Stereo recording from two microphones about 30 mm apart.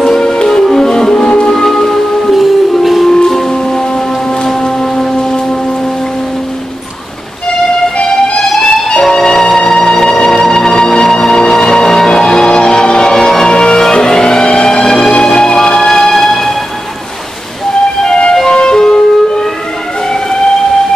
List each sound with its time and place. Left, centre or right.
0.0 s music: centre
1.5 s music: centre
2.3 s music: centre
3.4 s music: left
4.6 s foghorn: centre
8.4 s music: left
12.5 s music: left
13.1 s music: centre
13.5 s music: left
18.0 s emergency vehicle: left